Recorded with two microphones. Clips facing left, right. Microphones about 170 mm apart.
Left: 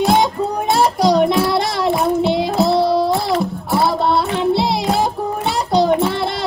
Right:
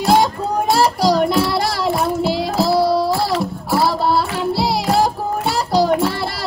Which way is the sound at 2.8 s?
25° left (ahead or behind).